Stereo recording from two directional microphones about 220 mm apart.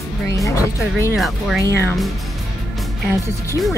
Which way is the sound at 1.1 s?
Centre (ahead or behind).